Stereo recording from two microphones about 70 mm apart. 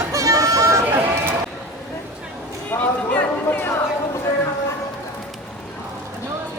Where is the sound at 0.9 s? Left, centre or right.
Right.